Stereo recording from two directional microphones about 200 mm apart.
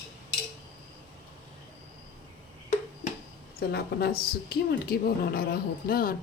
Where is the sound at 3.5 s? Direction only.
50° left (ahead or behind).